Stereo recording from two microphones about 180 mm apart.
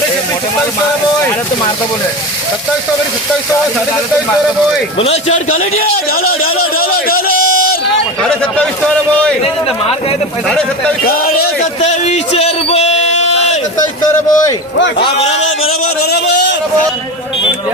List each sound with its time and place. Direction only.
4.9 s a man's voice: 35° left (ahead or behind)
6.7 s a man's voice: 55° left (ahead or behind)
8.2 s a man's voice: 5° left (ahead or behind)
11.0 s a man's voice: 55° left (ahead or behind)
11.8 s a man's voice: 40° left (ahead or behind)
14.0 s a man's voice: 20° left (ahead or behind)
16.0 s a man's voice: 70° left (ahead or behind)